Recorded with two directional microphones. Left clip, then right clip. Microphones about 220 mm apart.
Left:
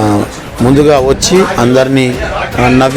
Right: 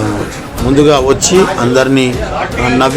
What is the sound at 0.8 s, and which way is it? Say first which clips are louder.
Speech: even; 30° left (ahead or behind).